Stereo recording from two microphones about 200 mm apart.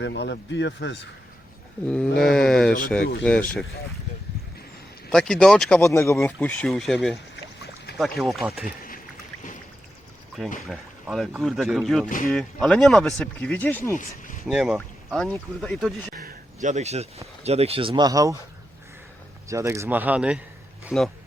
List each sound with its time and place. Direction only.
0.0 s speech: 60° left (ahead or behind)
1.9 s speech: 5° left (ahead or behind)
5.1 s speech: 5° left (ahead or behind)
10.6 s speech: centre (ahead or behind)
12.0 s speech: 40° left (ahead or behind)
12.3 s speech: centre (ahead or behind)
13.9 s a sound: 40° left (ahead or behind)
14.4 s speech: 5° right (ahead or behind)
16.1 s speech: 45° right (ahead or behind); by 18.3 s 15° right (ahead or behind)
19.5 s speech: 15° right (ahead or behind)